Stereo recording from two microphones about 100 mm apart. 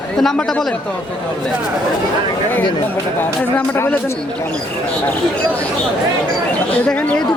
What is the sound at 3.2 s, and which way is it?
Speech, 20° left (ahead or behind).